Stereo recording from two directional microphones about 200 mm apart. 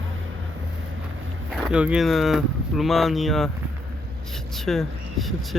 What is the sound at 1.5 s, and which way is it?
Speech, 5° right (ahead or behind).